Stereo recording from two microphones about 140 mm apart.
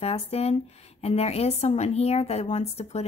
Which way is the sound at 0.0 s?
45° left (ahead or behind).